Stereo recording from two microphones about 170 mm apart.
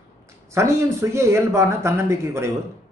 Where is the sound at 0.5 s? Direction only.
15° right (ahead or behind).